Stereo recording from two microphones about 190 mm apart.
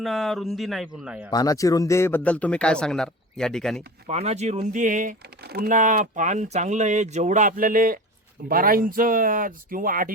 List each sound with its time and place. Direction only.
0.0 s speech: centre (ahead or behind)
1.3 s speech: 20° left (ahead or behind); by 3.8 s 5° left (ahead or behind)
4.1 s speech: 35° right (ahead or behind)